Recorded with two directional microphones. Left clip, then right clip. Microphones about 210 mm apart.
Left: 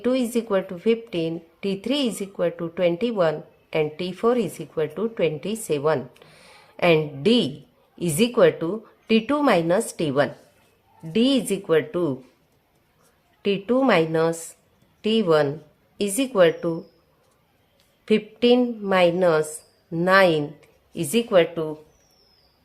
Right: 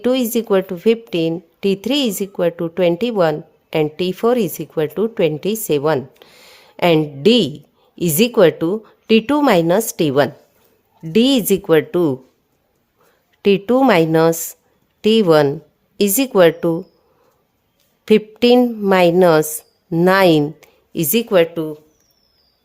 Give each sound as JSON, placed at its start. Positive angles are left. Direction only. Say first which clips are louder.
{"t": 0.0, "sound": "a woman's voice", "louder": "right 6 dB", "side_deg": -45}
{"t": 13.4, "sound": "a woman's voice", "louder": "right 8 dB", "side_deg": -50}
{"t": 18.0, "sound": "a woman's voice", "louder": "right 7 dB", "side_deg": -50}